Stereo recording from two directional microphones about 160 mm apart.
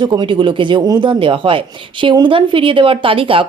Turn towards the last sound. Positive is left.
turn(degrees=-35)  # may be behind; listen again after turning